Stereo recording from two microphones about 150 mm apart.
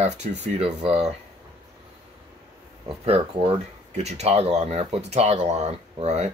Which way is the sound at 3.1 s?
35° right (ahead or behind).